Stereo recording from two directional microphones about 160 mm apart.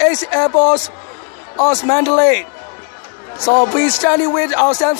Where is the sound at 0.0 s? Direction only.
15° left (ahead or behind).